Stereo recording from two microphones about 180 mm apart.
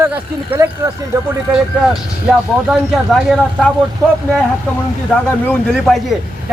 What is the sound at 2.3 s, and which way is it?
A man's voice, 5° right (ahead or behind).